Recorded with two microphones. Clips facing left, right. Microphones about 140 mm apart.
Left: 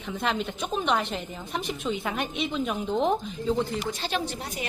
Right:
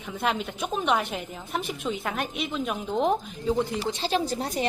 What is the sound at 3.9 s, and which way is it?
Speech, 30° right (ahead or behind).